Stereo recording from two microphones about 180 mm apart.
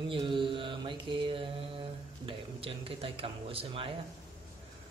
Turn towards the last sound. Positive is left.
turn(degrees=-30)  # may be behind; listen again after turning